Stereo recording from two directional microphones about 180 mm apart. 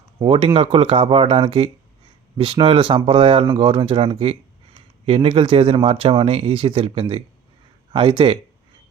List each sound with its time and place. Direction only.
0.2 s speech: 30° right (ahead or behind)